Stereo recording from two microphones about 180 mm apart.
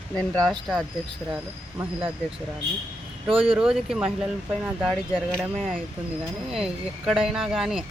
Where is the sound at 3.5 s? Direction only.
5° right (ahead or behind).